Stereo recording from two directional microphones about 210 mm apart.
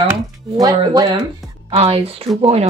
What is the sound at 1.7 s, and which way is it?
Speech, 30° right (ahead or behind).